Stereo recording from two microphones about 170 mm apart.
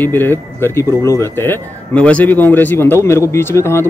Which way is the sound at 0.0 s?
10° left (ahead or behind).